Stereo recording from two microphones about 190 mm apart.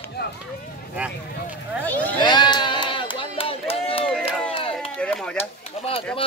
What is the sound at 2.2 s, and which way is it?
Sheep, 20° left (ahead or behind).